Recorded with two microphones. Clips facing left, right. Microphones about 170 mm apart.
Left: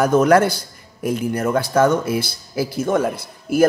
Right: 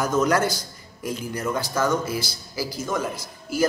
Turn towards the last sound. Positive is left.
turn(degrees=60)  # may be behind; listen again after turning